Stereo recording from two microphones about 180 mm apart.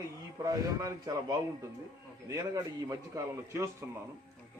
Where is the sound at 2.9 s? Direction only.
15° right (ahead or behind).